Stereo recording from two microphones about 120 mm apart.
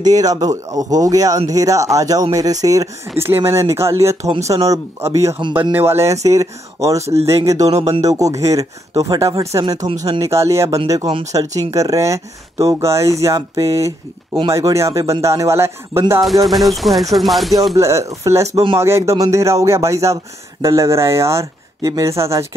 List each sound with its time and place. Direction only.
0.0 s speech: 30° right (ahead or behind)
16.4 s speech: centre (ahead or behind)
17.7 s speech: 25° right (ahead or behind)